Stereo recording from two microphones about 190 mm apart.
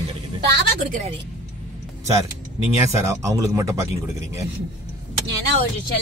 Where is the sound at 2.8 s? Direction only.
15° right (ahead or behind).